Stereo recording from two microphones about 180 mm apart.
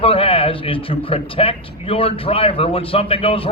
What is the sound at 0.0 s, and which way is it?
Speech, 30° left (ahead or behind).